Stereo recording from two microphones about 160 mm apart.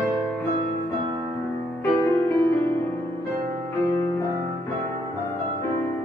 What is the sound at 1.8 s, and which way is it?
Music, 20° left (ahead or behind).